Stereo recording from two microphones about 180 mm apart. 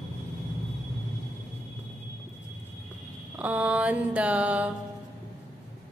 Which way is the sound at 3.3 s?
10° right (ahead or behind).